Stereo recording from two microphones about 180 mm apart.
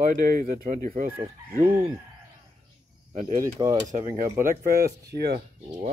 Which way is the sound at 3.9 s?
45° right (ahead or behind).